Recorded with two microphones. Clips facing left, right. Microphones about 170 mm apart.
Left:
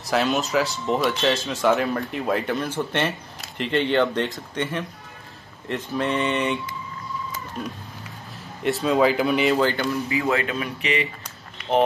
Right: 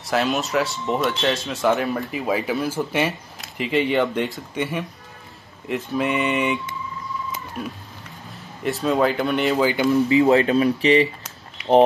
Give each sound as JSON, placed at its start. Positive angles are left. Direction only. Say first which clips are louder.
{"t": 0.0, "sound": "speech", "louder": "even", "side_deg": 0}
{"t": 8.6, "sound": "speech", "louder": "left 1 dB", "side_deg": 0}
{"t": 10.2, "sound": "speech", "louder": "right 8 dB", "side_deg": -35}